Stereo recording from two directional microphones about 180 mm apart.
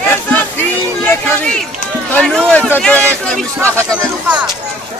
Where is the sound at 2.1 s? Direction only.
5° left (ahead or behind).